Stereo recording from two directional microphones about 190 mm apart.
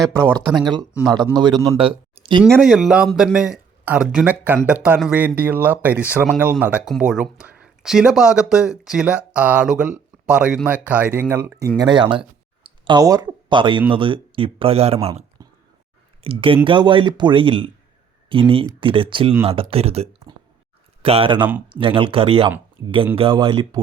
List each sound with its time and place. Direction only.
0.4 s speech: centre (ahead or behind)
1.3 s speech: 20° right (ahead or behind)
1.8 s a sound: 30° right (ahead or behind)
2.4 s speech: centre (ahead or behind); by 14.9 s 30° right (ahead or behind)
15.4 s a sound: 20° right (ahead or behind)
16.2 s speech: 30° right (ahead or behind)